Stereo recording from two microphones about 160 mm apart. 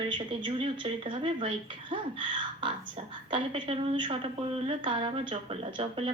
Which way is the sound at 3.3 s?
30° right (ahead or behind).